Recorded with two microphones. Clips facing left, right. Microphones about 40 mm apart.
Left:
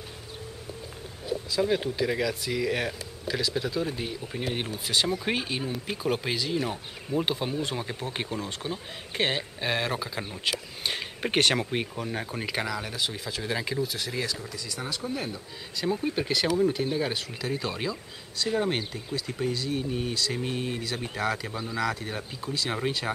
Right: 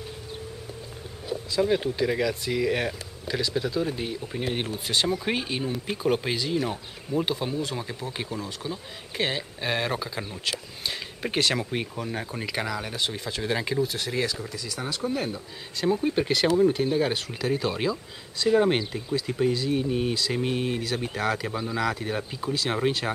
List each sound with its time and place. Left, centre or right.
1.5 s speech: centre
9.6 s speech: centre
10.8 s speech: left
11.5 s speech: centre
20.4 s speech: right
20.8 s speech: centre